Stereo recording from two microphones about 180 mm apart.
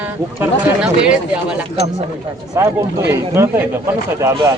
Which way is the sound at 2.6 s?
15° right (ahead or behind).